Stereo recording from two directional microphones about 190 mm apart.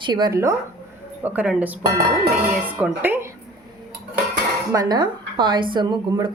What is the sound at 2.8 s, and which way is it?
Speech, 10° right (ahead or behind).